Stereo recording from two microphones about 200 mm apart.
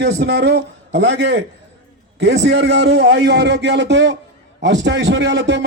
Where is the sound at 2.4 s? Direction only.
60° right (ahead or behind).